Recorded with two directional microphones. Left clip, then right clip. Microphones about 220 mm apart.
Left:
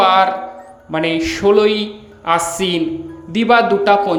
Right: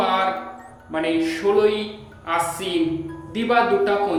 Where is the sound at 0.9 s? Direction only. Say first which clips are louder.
Left 4 dB; 45° left (ahead or behind).